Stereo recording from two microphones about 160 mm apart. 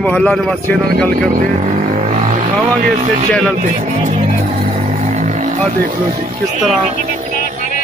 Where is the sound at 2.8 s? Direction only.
55° right (ahead or behind).